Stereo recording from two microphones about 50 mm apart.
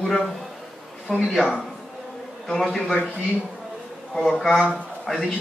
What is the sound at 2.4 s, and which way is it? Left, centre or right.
Speech, centre.